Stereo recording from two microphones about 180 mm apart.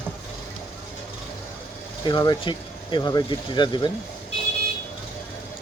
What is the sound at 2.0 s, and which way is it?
Speech, 25° left (ahead or behind).